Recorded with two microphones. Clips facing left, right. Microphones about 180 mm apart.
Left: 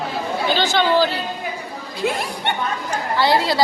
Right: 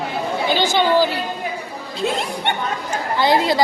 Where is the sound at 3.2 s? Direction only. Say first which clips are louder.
Right 1 dB; 20° right (ahead or behind).